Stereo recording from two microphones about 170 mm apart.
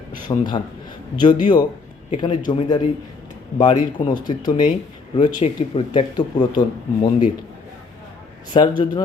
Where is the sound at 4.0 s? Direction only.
25° left (ahead or behind).